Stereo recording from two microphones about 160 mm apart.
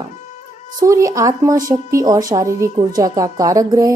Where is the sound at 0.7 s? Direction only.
20° right (ahead or behind).